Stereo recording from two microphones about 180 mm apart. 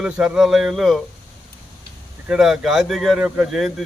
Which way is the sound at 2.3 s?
Centre (ahead or behind).